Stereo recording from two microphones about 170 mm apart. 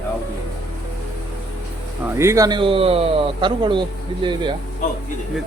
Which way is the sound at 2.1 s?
15° right (ahead or behind).